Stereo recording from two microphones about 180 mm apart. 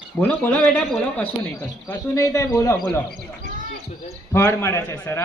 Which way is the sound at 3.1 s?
45° right (ahead or behind).